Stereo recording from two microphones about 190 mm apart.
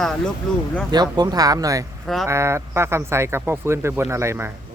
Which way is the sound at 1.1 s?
20° right (ahead or behind).